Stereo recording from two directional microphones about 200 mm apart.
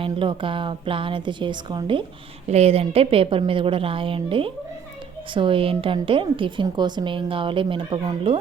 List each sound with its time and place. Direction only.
0.0 s a woman's voice: 25° right (ahead or behind)